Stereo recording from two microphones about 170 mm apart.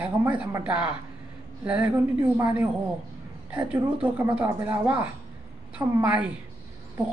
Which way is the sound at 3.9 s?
10° right (ahead or behind).